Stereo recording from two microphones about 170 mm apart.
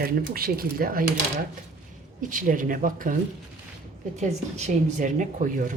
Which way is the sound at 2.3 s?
50° right (ahead or behind).